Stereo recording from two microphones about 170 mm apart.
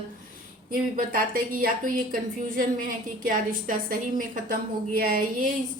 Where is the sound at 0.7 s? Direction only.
60° right (ahead or behind).